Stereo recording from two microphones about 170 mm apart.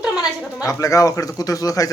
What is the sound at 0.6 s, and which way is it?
Speech, 20° left (ahead or behind).